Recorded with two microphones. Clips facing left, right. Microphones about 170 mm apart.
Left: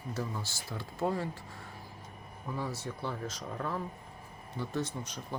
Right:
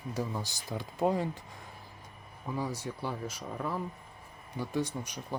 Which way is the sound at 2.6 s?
10° right (ahead or behind).